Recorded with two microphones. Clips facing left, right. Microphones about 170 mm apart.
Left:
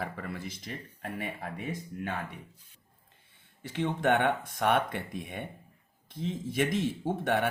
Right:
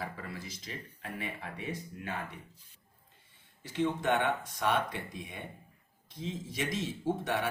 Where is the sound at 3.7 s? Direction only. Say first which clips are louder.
Left 2 dB; 60° left (ahead or behind).